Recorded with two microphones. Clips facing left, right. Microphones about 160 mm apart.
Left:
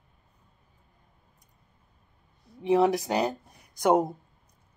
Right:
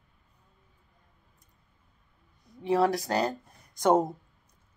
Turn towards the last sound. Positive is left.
turn(degrees=10)  # may be behind; listen again after turning